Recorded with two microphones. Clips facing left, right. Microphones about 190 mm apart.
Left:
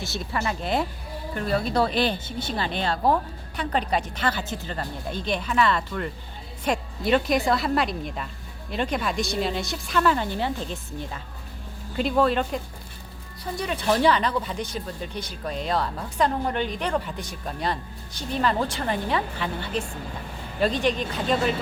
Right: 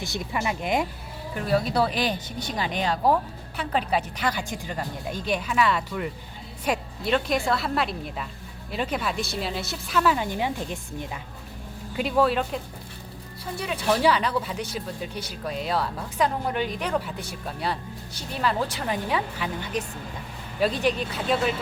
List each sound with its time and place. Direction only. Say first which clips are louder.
0.0 s a woman's voice: even; 15° right (ahead or behind)